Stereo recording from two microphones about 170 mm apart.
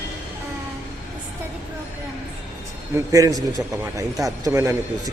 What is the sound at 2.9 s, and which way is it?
A man's voice, 20° right (ahead or behind).